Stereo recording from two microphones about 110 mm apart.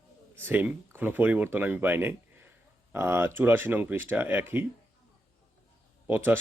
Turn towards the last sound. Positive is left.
turn(degrees=-20)  # may be behind; listen again after turning